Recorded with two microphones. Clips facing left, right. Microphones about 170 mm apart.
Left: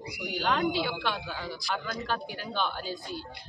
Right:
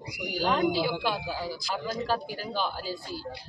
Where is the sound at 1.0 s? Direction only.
5° right (ahead or behind).